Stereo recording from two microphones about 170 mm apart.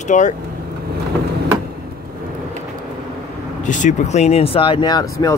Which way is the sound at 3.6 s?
45° left (ahead or behind).